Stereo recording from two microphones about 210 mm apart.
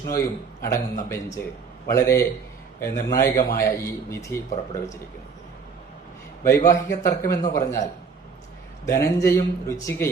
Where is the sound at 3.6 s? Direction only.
15° left (ahead or behind).